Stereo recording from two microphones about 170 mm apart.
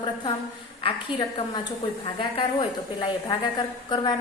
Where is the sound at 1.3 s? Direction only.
25° left (ahead or behind).